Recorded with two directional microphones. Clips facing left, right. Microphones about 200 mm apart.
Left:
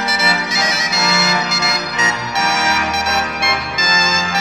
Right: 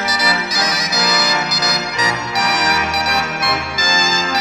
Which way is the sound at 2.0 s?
25° left (ahead or behind).